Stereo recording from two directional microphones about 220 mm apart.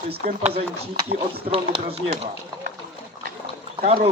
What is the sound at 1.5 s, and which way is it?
Speech, 25° right (ahead or behind).